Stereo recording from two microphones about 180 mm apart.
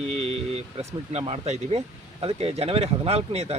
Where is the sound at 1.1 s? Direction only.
35° right (ahead or behind).